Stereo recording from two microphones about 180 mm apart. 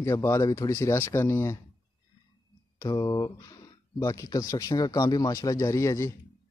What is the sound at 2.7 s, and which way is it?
Speech, 20° left (ahead or behind).